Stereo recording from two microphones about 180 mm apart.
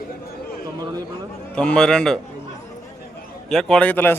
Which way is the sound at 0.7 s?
20° right (ahead or behind).